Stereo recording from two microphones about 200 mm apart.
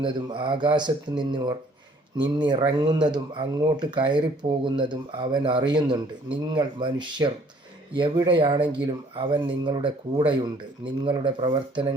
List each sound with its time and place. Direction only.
0.0 s speech: 25° right (ahead or behind)